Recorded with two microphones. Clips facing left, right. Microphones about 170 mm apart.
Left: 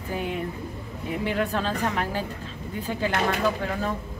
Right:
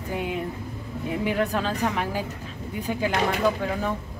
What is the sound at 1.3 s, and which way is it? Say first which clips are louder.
Speech: right 1 dB; 10° right (ahead or behind).